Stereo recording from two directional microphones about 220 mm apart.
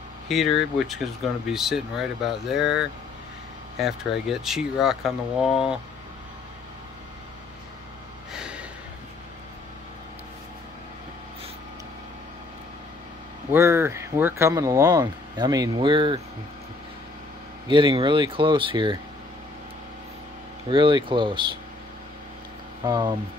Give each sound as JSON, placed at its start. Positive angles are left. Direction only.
{"t": 0.3, "sound": "speech", "side_deg": 0}
{"t": 8.3, "sound": "a sound", "side_deg": -5}
{"t": 13.5, "sound": "speech", "side_deg": -10}
{"t": 17.6, "sound": "speech", "side_deg": -20}
{"t": 20.7, "sound": "speech", "side_deg": -20}
{"t": 22.8, "sound": "speech", "side_deg": -20}